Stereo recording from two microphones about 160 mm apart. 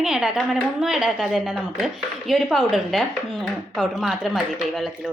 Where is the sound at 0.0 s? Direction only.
5° right (ahead or behind).